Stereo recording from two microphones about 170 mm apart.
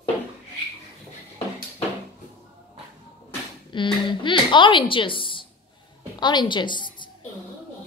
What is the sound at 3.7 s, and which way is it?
A woman's voice, 30° left (ahead or behind).